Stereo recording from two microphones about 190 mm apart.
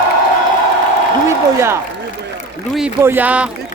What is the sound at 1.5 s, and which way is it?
Speech, 15° right (ahead or behind).